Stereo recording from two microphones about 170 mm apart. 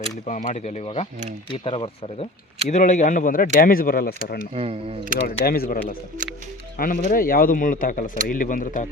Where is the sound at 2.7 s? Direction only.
45° left (ahead or behind); by 4.4 s 60° left (ahead or behind).